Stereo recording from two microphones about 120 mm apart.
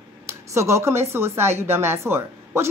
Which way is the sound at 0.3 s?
25° right (ahead or behind).